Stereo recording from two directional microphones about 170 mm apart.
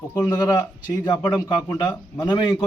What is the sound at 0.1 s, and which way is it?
A man's voice, 20° left (ahead or behind).